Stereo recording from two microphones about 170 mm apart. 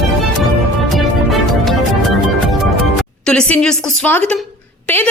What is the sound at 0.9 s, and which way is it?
Music, centre (ahead or behind).